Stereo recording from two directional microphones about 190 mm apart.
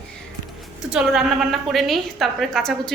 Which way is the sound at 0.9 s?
5° right (ahead or behind).